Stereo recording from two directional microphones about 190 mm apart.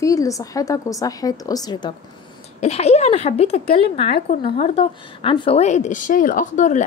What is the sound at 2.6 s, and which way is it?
A woman's voice, 35° left (ahead or behind).